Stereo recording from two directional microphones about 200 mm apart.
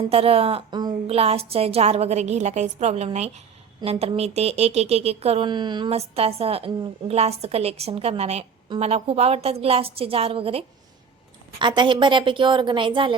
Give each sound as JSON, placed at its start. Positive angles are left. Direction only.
{"t": 0.1, "sound": "a woman's voice", "side_deg": -30}
{"t": 11.6, "sound": "a woman's voice", "side_deg": -25}